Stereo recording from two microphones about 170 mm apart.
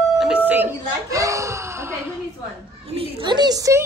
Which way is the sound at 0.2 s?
10° right (ahead or behind).